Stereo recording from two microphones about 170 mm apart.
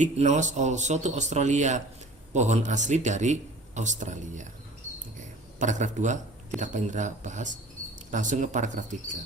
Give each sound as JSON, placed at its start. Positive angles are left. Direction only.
{"t": 0.0, "sound": "a man's voice", "side_deg": -45}
{"t": 5.5, "sound": "a man's voice", "side_deg": -45}